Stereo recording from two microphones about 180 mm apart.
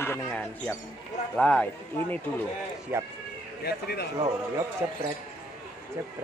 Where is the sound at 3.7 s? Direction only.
60° left (ahead or behind).